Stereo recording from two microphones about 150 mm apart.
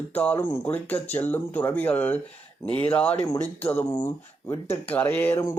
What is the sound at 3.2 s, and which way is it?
Speech, 25° left (ahead or behind).